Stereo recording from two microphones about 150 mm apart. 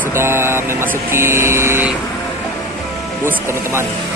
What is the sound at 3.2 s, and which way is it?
Speech, 15° right (ahead or behind).